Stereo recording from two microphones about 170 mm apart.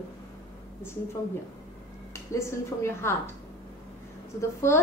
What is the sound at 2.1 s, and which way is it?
A woman's voice, 15° left (ahead or behind).